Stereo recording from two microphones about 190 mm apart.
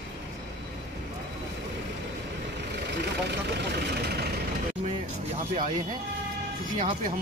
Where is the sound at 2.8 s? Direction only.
60° right (ahead or behind).